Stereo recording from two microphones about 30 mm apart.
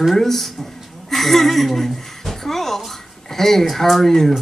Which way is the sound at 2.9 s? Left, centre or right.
Centre.